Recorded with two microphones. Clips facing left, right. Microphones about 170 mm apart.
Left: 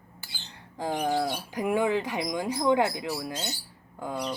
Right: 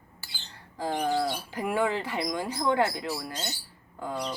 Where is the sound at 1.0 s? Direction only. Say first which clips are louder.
Even; 10° left (ahead or behind).